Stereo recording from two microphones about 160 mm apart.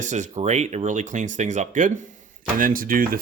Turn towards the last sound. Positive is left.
turn(degrees=-60)  # may be behind; listen again after turning